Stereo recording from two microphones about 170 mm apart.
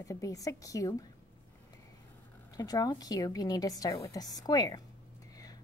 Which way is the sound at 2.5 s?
20° left (ahead or behind).